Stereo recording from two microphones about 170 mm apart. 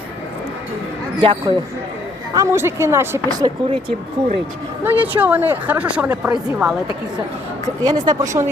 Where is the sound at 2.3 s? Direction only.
15° right (ahead or behind).